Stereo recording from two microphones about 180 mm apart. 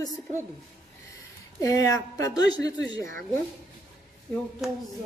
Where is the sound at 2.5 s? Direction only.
90° right.